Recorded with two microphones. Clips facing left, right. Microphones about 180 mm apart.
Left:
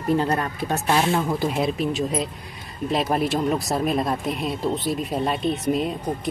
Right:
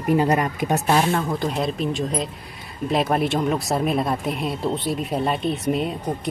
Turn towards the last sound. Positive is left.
turn(degrees=0)  # may be behind; listen again after turning